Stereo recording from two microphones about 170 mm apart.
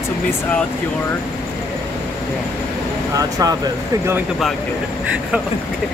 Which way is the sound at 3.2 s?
20° right (ahead or behind).